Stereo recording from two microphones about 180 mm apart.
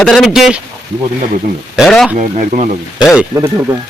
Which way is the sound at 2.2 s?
45° right (ahead or behind).